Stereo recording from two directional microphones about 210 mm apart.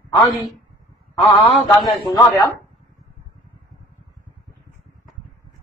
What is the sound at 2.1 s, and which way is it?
Speech, 15° left (ahead or behind).